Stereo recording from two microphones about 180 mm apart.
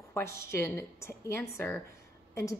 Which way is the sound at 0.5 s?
15° left (ahead or behind).